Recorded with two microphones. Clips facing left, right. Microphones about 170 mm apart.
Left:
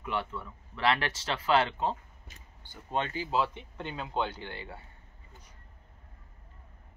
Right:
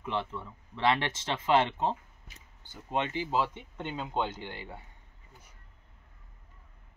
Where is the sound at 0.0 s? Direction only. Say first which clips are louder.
Even; 25° right (ahead or behind).